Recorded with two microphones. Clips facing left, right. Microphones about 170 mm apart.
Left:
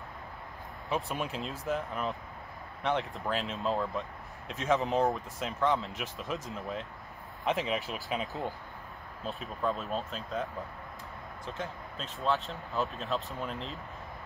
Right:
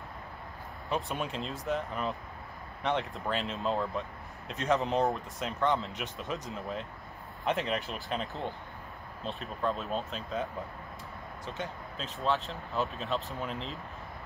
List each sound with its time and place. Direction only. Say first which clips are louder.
0.8 s speech: even; centre (ahead or behind)